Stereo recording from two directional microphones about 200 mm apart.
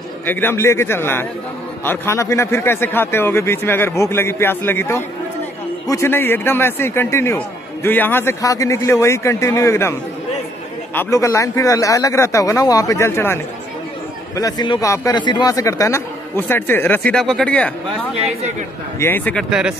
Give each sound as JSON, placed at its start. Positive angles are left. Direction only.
{"t": 0.3, "sound": "a man's voice", "side_deg": 10}
{"t": 11.0, "sound": "a man's voice", "side_deg": 15}
{"t": 18.9, "sound": "a man's voice", "side_deg": 10}